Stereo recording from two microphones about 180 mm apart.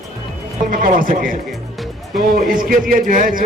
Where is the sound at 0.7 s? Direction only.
50° right (ahead or behind).